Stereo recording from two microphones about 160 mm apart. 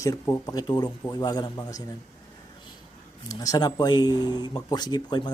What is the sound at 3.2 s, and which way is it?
Speech, 25° left (ahead or behind).